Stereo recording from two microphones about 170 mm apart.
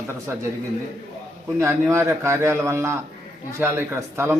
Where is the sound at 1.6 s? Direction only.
15° right (ahead or behind).